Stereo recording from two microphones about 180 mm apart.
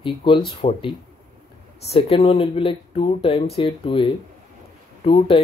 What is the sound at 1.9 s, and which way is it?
Speech, 30° left (ahead or behind).